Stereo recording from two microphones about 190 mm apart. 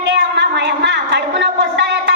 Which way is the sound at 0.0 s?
65° right (ahead or behind).